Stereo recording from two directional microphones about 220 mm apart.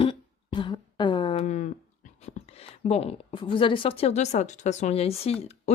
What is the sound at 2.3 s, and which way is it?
Speech, 30° left (ahead or behind).